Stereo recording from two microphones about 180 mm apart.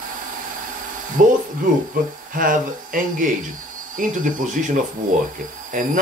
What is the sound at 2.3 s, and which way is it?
Speech, 50° right (ahead or behind).